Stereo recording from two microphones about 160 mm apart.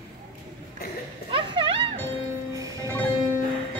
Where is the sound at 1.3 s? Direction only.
30° right (ahead or behind).